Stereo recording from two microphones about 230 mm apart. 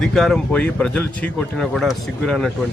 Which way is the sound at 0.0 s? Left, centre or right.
Centre.